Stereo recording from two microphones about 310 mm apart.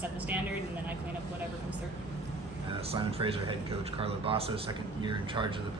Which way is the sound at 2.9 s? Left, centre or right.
Centre.